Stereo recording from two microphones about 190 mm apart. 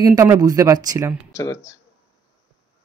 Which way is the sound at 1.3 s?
15° left (ahead or behind).